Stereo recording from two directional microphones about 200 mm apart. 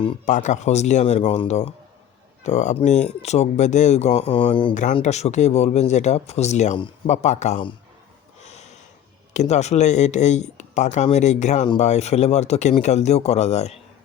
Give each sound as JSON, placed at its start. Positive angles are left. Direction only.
{"t": 0.3, "sound": "speech", "side_deg": 40}
{"t": 4.7, "sound": "speech", "side_deg": 40}
{"t": 8.4, "sound": "snort", "side_deg": 35}
{"t": 9.3, "sound": "speech", "side_deg": 35}